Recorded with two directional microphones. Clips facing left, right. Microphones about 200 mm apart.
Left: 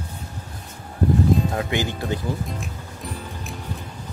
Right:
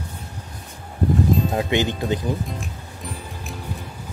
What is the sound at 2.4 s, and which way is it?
Music, centre (ahead or behind).